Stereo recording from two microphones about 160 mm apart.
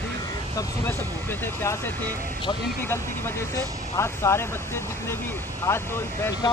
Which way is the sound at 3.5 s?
15° left (ahead or behind).